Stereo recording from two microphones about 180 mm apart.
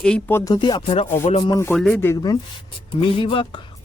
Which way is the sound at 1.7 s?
Centre (ahead or behind).